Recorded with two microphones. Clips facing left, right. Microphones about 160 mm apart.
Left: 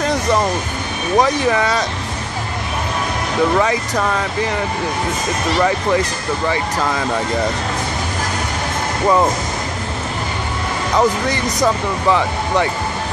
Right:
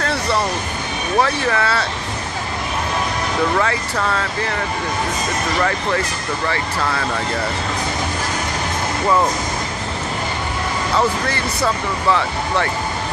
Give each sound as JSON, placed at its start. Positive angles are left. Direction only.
{"t": 0.0, "sound": "vehicle", "side_deg": 15}
{"t": 1.1, "sound": "speech", "side_deg": 15}
{"t": 3.5, "sound": "speech", "side_deg": 15}
{"t": 6.4, "sound": "speech", "side_deg": 15}
{"t": 11.0, "sound": "speech", "side_deg": 15}